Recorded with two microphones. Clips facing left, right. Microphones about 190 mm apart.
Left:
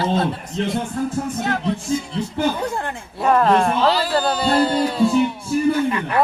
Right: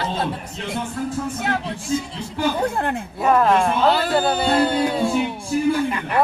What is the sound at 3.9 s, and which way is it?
Speech, 55° right (ahead or behind).